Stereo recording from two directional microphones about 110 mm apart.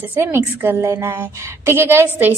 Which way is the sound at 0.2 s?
25° right (ahead or behind).